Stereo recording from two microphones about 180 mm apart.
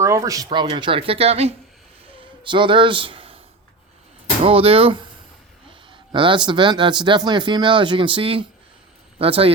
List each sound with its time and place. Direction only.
0.0 s speech: 15° right (ahead or behind)
4.4 s speech: 30° right (ahead or behind)
6.1 s speech: 25° right (ahead or behind)